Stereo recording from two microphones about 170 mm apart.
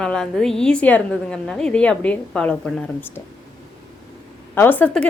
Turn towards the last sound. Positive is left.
turn(degrees=10)  # may be behind; listen again after turning